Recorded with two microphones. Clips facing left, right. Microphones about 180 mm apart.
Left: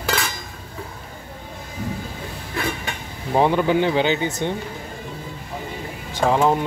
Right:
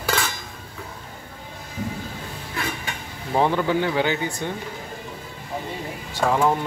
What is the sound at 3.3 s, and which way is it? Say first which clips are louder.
Speech: left 3 dB; 15° left (ahead or behind).